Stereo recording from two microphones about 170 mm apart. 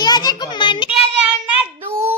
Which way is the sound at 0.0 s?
25° left (ahead or behind).